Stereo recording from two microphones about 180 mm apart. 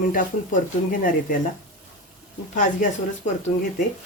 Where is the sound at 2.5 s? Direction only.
45° left (ahead or behind).